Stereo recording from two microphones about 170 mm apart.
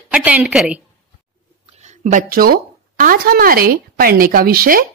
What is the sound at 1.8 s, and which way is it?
Speech, 45° right (ahead or behind).